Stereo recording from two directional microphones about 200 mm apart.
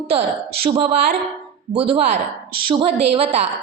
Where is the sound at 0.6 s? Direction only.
30° right (ahead or behind).